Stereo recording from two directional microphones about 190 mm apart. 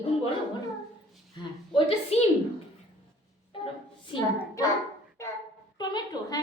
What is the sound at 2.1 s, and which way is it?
Speech, 35° left (ahead or behind).